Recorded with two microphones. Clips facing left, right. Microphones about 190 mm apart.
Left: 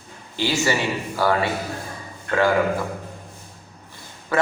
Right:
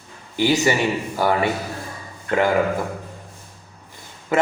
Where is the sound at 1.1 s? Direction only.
20° right (ahead or behind).